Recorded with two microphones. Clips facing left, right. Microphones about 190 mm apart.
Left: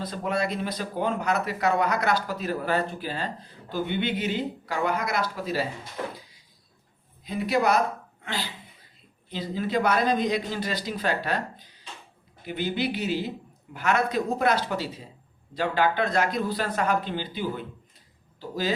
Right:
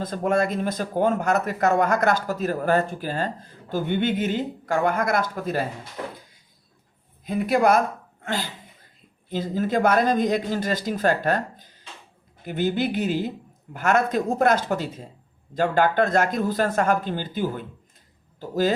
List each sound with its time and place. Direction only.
0.0 s speech: 45° right (ahead or behind)
6.1 s cupboard open or close: 50° right (ahead or behind)
7.3 s speech: 50° right (ahead or behind)
8.2 s a sound: 45° right (ahead or behind)
9.3 s speech: 50° right (ahead or behind)